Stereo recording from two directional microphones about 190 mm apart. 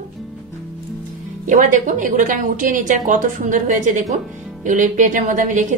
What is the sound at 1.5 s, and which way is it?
A woman's voice, 45° right (ahead or behind).